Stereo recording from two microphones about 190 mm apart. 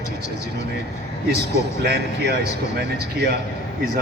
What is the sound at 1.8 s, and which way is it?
Speech, 60° right (ahead or behind).